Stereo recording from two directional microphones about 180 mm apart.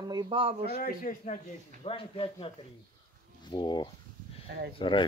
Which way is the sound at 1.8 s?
30° left (ahead or behind).